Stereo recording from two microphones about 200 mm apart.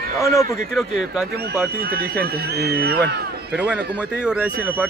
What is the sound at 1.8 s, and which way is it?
Speech, 55° right (ahead or behind).